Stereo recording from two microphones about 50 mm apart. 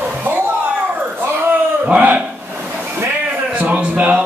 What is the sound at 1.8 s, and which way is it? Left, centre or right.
Speech, right.